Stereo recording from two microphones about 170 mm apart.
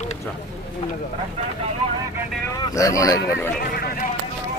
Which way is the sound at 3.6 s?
60° left (ahead or behind).